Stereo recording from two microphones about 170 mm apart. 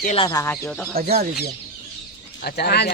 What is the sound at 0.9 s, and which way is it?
Speech, 65° right (ahead or behind).